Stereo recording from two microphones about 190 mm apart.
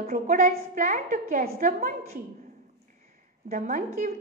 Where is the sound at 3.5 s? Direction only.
40° right (ahead or behind).